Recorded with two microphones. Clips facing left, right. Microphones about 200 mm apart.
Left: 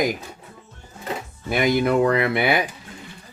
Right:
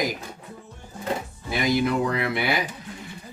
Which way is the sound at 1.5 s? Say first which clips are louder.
Left 4 dB; 55° left (ahead or behind).